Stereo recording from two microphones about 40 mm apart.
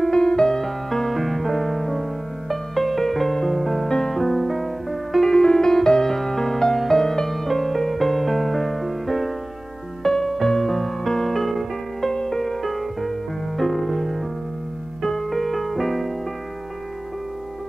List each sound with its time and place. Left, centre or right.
0.1 s music: centre
3.9 s music: centre
4.2 s music: centre
5.2 s music: centre
12.1 s music: centre